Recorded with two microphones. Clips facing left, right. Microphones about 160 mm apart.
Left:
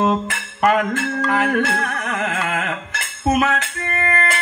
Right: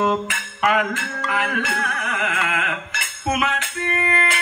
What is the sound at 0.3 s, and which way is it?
Music, 40° left (ahead or behind).